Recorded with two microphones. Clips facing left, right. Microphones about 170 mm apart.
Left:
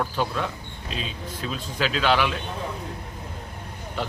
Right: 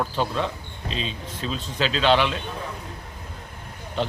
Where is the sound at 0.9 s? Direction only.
10° left (ahead or behind).